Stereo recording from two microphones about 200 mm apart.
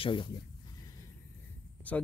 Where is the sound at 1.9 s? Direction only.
5° left (ahead or behind).